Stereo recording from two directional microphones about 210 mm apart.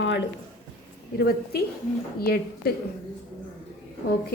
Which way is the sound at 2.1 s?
45° left (ahead or behind).